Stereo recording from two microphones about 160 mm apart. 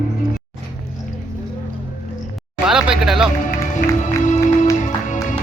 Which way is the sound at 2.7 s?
5° right (ahead or behind).